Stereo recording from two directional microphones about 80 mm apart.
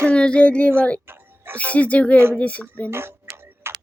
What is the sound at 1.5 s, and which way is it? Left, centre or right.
Speech, centre.